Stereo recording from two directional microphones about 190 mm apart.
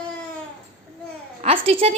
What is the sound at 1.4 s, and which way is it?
Speech, 30° right (ahead or behind).